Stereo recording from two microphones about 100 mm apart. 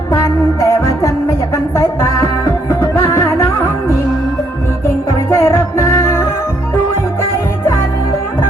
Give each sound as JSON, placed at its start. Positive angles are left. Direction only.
{"t": 0.1, "sound": "music", "side_deg": 35}
{"t": 5.3, "sound": "music", "side_deg": 25}